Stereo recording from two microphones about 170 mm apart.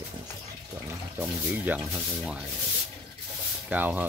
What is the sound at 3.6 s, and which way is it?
Speech, 10° right (ahead or behind).